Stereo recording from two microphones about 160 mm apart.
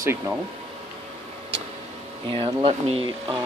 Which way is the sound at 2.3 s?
30° right (ahead or behind).